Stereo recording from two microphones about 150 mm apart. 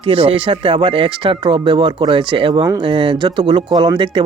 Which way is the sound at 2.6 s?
25° right (ahead or behind).